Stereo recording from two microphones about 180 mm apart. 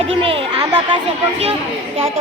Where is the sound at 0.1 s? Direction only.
30° right (ahead or behind).